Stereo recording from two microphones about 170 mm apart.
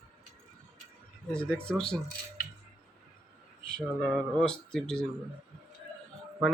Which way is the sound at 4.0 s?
5° left (ahead or behind).